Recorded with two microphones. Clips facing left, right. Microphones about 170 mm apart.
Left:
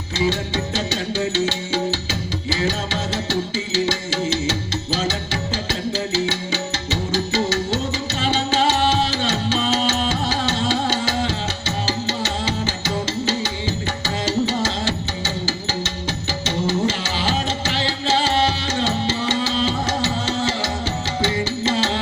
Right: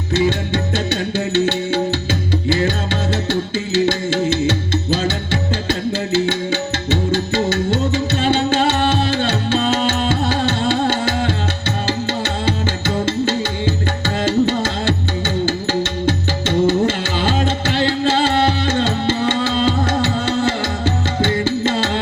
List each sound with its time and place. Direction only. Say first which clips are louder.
0.1 s music: right 4 dB; 60° right (ahead or behind)
3.8 s music: right 5 dB; 55° right (ahead or behind)
6.1 s music: right 5 dB; 55° right (ahead or behind)
14.3 s music: right 4 dB; 55° right (ahead or behind)